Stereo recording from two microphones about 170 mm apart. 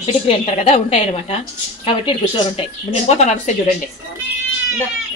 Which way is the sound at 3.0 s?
40° left (ahead or behind).